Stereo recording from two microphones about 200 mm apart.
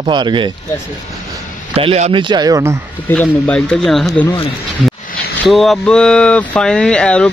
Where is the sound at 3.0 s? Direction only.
10° left (ahead or behind).